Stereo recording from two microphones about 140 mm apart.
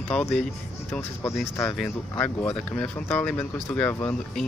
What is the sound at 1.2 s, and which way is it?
Speech, 20° left (ahead or behind).